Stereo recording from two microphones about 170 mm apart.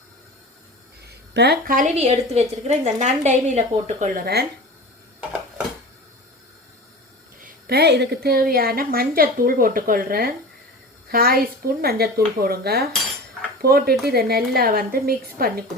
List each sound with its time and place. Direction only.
1.0 s a sound: 75° right (ahead or behind)
1.7 s a woman's voice: 45° right (ahead or behind)
4.1 s speech: 65° right (ahead or behind)
7.4 s a woman's voice: 70° right (ahead or behind)